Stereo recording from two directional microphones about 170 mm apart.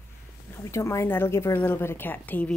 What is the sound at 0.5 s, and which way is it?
Speech, 15° left (ahead or behind).